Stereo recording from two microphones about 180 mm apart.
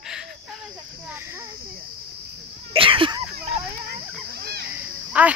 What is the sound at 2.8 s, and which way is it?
Speech, 30° right (ahead or behind).